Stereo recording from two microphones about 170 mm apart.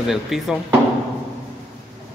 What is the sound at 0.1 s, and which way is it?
Speech, 5° right (ahead or behind).